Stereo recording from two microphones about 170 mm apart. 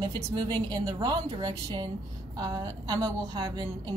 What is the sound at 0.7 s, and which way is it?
A woman's voice, 25° right (ahead or behind).